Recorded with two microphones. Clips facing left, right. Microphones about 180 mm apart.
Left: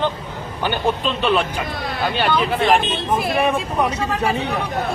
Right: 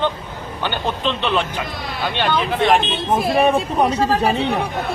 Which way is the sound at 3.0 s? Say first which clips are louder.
Right 6 dB; 30° right (ahead or behind).